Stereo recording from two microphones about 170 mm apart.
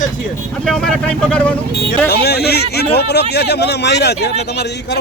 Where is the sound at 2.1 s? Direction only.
70° left (ahead or behind).